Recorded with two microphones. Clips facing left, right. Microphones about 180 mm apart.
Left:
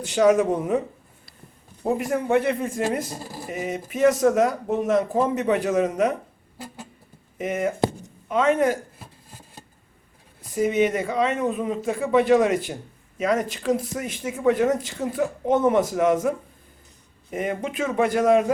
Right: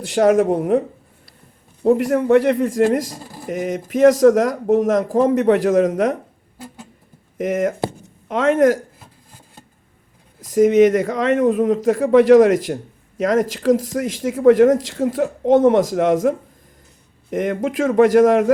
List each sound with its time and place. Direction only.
0.0 s a man's voice: 60° right (ahead or behind); by 5.2 s 90° right
5.3 s a man's voice: 75° right (ahead or behind)
7.3 s a man's voice: 75° right (ahead or behind)
10.4 s a man's voice: 80° right
17.3 s speech: 80° right